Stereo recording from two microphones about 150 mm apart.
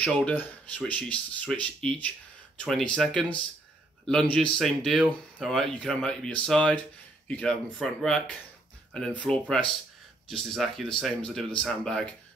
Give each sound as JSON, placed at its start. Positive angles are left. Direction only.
{"t": 0.0, "sound": "speech", "side_deg": 5}